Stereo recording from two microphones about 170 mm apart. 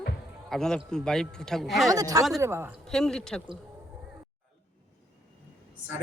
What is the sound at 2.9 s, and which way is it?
Speech, 5° left (ahead or behind).